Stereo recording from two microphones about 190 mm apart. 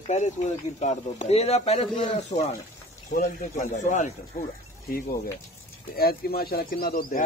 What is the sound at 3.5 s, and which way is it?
Speech, 40° left (ahead or behind).